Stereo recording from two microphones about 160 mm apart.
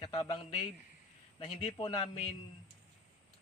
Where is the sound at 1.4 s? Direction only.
30° left (ahead or behind).